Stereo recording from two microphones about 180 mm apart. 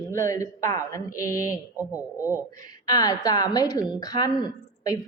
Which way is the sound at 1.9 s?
10° right (ahead or behind).